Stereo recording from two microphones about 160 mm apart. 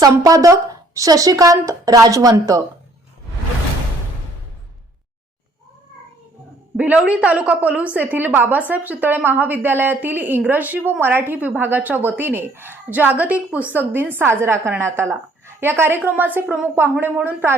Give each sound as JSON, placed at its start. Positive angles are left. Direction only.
{"t": 0.0, "sound": "speech", "side_deg": -20}
{"t": 6.7, "sound": "a woman's voice", "side_deg": -10}